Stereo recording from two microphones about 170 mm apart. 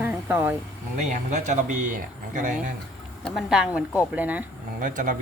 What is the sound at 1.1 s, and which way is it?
Speech, 45° right (ahead or behind).